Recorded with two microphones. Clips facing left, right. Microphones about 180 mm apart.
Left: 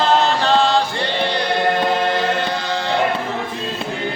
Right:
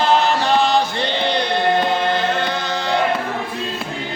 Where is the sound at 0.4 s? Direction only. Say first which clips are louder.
Left 1 dB; 15° right (ahead or behind).